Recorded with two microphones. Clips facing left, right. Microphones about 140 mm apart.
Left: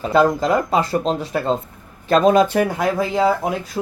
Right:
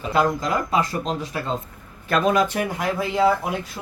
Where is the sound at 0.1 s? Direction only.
30° left (ahead or behind).